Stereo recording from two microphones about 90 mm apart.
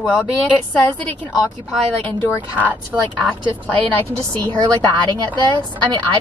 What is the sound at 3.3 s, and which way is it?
Speech, 15° left (ahead or behind).